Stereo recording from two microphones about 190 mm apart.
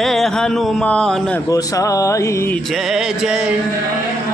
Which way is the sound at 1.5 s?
20° left (ahead or behind).